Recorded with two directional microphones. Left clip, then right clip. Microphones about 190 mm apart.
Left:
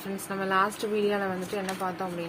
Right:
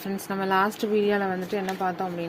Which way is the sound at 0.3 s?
30° right (ahead or behind).